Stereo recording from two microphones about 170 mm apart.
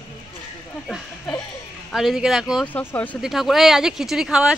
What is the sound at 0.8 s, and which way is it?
Speech, centre (ahead or behind).